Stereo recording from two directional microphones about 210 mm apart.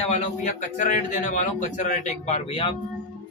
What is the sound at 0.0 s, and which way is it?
A man's voice, 35° left (ahead or behind).